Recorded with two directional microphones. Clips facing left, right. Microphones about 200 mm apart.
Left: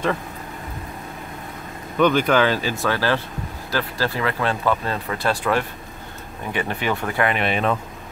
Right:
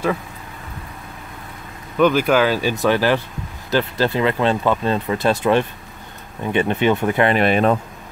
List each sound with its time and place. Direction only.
2.0 s speech: 5° right (ahead or behind); by 7.3 s 20° right (ahead or behind)
7.3 s speech: 40° right (ahead or behind)